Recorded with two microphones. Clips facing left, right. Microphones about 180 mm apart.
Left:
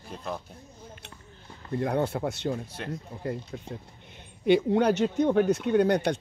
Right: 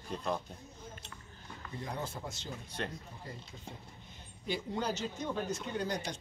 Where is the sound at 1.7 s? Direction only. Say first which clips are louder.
Left 14 dB; 65° left (ahead or behind).